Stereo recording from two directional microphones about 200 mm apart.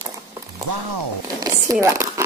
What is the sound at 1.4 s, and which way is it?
Crumpling, 15° right (ahead or behind).